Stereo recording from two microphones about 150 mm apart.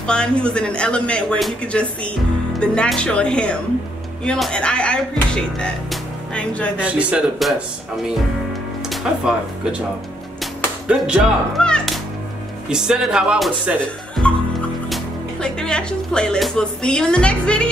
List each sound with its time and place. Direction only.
0.0 s speech: 5° left (ahead or behind)
6.8 s a man's voice: 10° right (ahead or behind)
8.8 s a child's voice: 5° right (ahead or behind)
15.4 s speech: 5° left (ahead or behind)